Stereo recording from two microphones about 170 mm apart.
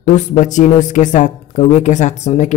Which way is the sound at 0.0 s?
45° left (ahead or behind).